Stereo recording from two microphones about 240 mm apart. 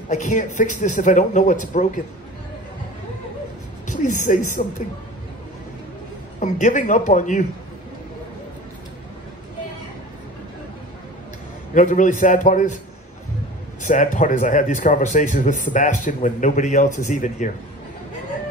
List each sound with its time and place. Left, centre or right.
0.1 s a man's voice: left
3.8 s speech: left
6.4 s a man's voice: left
11.7 s a man's voice: left
13.8 s a man's voice: left